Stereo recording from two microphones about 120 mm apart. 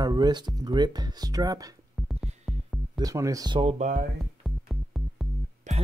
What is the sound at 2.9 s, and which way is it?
Speech, 30° right (ahead or behind).